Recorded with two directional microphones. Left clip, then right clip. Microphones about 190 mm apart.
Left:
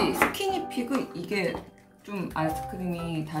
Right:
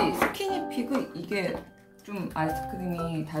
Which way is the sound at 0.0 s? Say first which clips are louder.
Left 1 dB; 5° left (ahead or behind).